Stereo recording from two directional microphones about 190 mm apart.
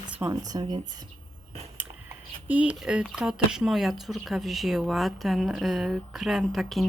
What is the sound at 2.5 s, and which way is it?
Speech, 5° right (ahead or behind).